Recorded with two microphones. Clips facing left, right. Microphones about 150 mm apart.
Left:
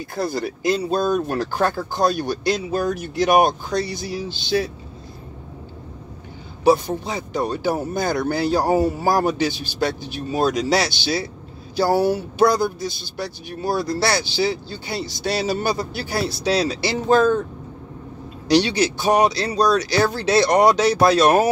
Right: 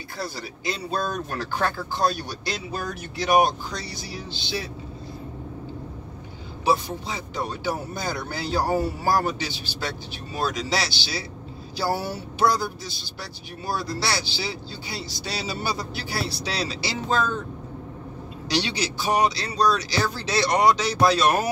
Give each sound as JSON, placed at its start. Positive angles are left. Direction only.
{"t": 0.1, "sound": "speech", "side_deg": 50}
{"t": 6.6, "sound": "speech", "side_deg": 45}
{"t": 18.5, "sound": "speech", "side_deg": 55}